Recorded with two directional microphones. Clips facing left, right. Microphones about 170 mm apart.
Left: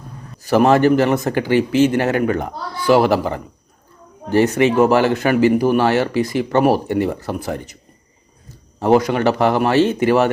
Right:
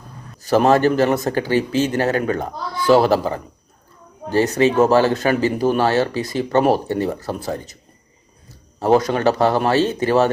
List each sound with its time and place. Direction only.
0.4 s speech: 15° left (ahead or behind)
4.5 s speech: 15° left (ahead or behind)
8.8 s speech: 15° left (ahead or behind)